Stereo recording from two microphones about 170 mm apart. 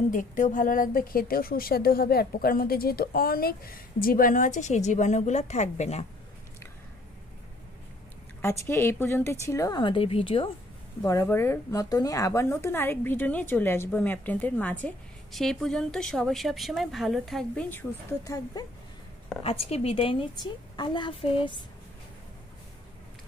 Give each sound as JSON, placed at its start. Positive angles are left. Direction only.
{"t": 0.1, "sound": "a woman's voice", "side_deg": 50}
{"t": 8.4, "sound": "a woman's voice", "side_deg": 15}
{"t": 11.0, "sound": "speech", "side_deg": 20}
{"t": 19.4, "sound": "a woman's voice", "side_deg": 35}